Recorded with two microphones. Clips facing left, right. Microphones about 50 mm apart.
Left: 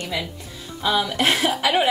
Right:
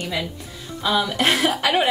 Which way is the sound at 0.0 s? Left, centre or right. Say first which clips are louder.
Right 1 dB; centre.